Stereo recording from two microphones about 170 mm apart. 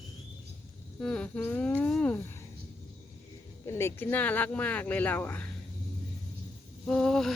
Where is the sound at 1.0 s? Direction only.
5° left (ahead or behind).